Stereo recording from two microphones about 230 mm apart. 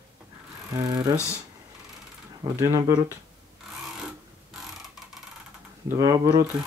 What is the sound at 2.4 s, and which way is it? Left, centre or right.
Speech, centre.